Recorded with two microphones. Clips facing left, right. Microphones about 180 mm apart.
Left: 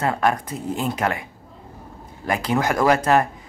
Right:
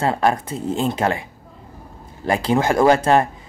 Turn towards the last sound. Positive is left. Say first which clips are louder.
# right 3 dB
turn(degrees=-30)  # may be behind; listen again after turning